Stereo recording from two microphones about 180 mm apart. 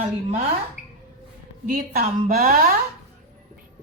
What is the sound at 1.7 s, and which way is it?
Speech, 55° right (ahead or behind).